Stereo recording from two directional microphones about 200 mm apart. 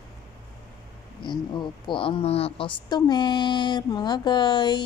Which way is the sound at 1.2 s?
25° left (ahead or behind).